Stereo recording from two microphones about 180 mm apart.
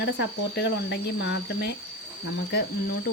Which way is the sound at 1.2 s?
75° left (ahead or behind).